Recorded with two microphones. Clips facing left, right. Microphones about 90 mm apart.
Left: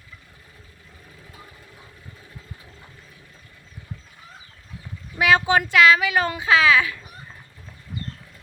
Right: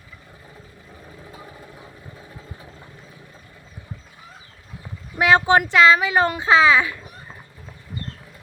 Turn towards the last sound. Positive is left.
turn(degrees=-25)  # may be behind; listen again after turning